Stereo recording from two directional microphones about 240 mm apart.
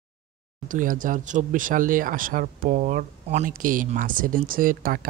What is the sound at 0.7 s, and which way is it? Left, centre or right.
Speech, right.